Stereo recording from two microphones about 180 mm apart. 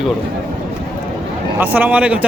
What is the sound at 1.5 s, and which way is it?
Speech, 10° right (ahead or behind).